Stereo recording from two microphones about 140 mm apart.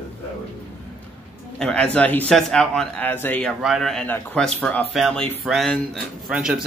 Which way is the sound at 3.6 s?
Centre (ahead or behind).